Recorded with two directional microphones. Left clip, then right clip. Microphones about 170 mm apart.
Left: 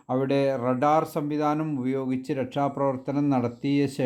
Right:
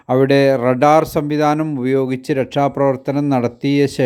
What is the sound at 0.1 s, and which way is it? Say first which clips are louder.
Speech: right 11 dB; 40° right (ahead or behind).